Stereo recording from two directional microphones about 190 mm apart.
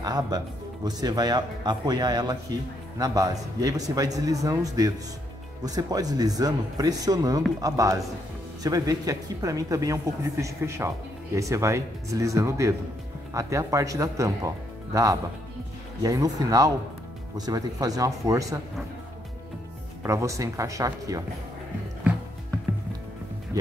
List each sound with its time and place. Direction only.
0.0 s speech: 20° right (ahead or behind)
20.0 s speech: 15° right (ahead or behind)
23.5 s speech: 20° right (ahead or behind)